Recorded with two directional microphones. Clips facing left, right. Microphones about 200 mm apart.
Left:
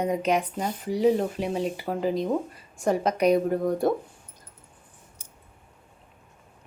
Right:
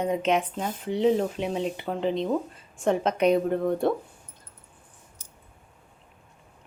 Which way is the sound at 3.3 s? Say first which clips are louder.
Left 1 dB; 10° left (ahead or behind).